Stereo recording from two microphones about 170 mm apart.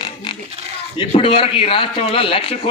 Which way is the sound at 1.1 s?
30° left (ahead or behind).